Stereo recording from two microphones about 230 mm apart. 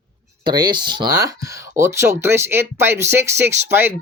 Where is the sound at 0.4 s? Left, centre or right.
Centre.